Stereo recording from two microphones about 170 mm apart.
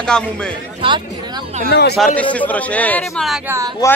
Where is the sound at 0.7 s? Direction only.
30° right (ahead or behind).